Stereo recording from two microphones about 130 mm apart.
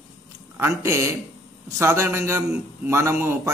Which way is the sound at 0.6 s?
20° right (ahead or behind).